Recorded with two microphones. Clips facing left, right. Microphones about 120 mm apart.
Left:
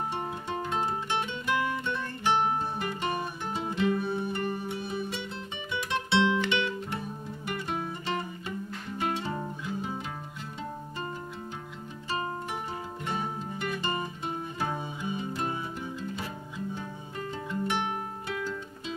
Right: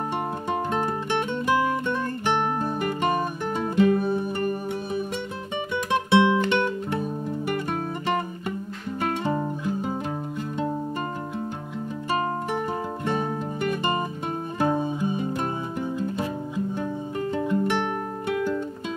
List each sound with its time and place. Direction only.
0.5 s music: 50° right (ahead or behind)
13.1 s music: 45° right (ahead or behind)
17.3 s music: 55° right (ahead or behind)